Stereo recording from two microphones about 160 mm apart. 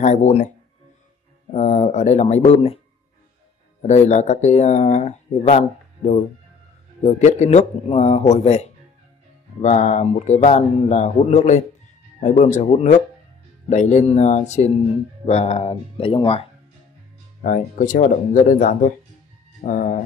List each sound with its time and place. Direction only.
0.0 s speech: 45° left (ahead or behind)
1.5 s speech: 45° left (ahead or behind)
3.8 s speech: 45° left (ahead or behind)
17.4 s speech: 55° left (ahead or behind)